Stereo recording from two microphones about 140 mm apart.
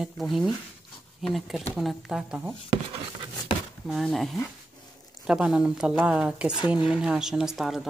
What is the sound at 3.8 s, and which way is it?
Speech, centre (ahead or behind).